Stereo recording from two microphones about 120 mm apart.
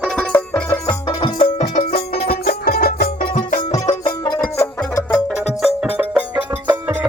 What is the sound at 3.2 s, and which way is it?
Music, 40° left (ahead or behind).